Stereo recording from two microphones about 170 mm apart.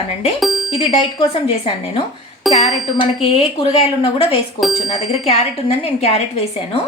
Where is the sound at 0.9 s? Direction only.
35° left (ahead or behind).